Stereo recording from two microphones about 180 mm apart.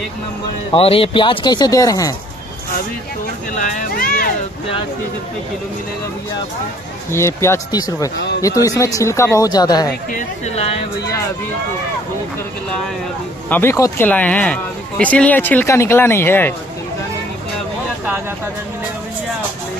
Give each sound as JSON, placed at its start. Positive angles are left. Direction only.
{"t": 0.7, "sound": "speech", "side_deg": 30}
{"t": 3.5, "sound": "speech", "side_deg": 45}
{"t": 7.1, "sound": "speech", "side_deg": 15}
{"t": 10.1, "sound": "speech", "side_deg": 40}
{"t": 13.5, "sound": "speech", "side_deg": 15}